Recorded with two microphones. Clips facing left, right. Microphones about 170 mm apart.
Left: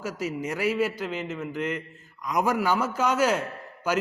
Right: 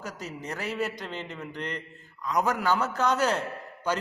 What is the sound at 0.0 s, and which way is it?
A man's voice, 10° left (ahead or behind).